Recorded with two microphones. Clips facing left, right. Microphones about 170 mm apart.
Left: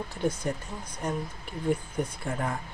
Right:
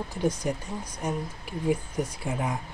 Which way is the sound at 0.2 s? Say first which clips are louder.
Right 2 dB; 15° right (ahead or behind).